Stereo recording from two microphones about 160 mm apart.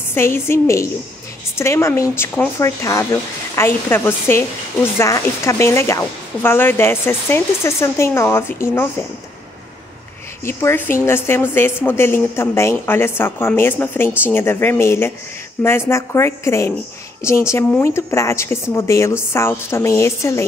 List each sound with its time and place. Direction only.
0.1 s speech: 15° left (ahead or behind)
10.4 s speech: 15° left (ahead or behind)